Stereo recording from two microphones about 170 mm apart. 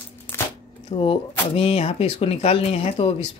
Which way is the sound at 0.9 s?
30° left (ahead or behind).